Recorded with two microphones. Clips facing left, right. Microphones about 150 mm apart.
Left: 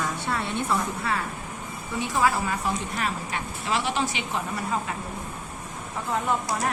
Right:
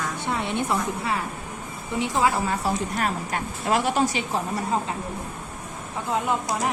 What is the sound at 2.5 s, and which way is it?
A woman's voice, 40° right (ahead or behind).